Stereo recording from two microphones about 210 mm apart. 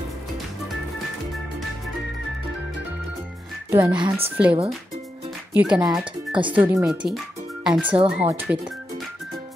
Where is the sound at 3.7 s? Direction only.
10° right (ahead or behind).